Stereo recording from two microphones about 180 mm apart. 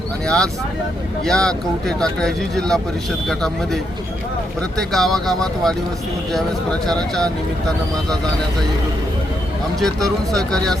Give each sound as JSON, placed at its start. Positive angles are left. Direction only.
{"t": 0.3, "sound": "speech", "side_deg": 5}
{"t": 4.8, "sound": "speech", "side_deg": 0}
{"t": 9.8, "sound": "speech", "side_deg": 0}